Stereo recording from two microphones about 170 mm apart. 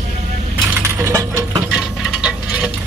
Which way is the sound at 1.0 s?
15° right (ahead or behind).